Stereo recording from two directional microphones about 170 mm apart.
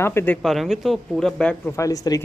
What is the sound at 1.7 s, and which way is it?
Speech, 20° left (ahead or behind).